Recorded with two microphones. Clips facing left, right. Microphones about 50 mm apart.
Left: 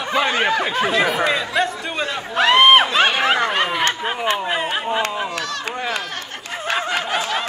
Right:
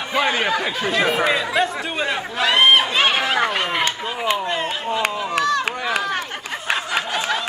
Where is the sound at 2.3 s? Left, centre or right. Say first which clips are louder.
Left 3 dB; left.